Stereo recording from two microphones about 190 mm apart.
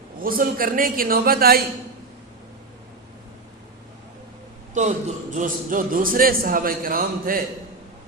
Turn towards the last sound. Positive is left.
turn(degrees=-50)  # may be behind; listen again after turning